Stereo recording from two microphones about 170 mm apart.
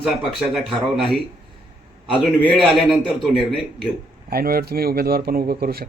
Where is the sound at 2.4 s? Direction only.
5° left (ahead or behind).